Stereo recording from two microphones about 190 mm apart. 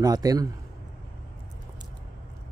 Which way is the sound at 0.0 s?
20° right (ahead or behind).